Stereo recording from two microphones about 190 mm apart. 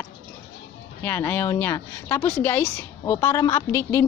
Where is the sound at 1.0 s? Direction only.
10° left (ahead or behind).